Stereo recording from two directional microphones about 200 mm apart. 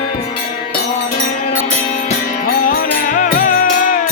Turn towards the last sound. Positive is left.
turn(degrees=40)  # may be behind; listen again after turning